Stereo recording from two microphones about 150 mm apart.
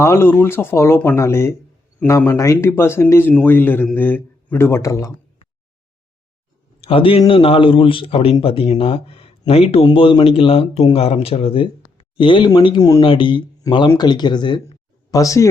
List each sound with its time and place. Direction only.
0.0 s speech: 15° left (ahead or behind)
6.8 s speech: 40° left (ahead or behind); by 15.4 s 20° left (ahead or behind)